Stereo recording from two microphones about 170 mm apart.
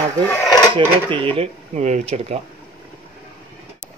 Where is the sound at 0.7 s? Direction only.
30° right (ahead or behind).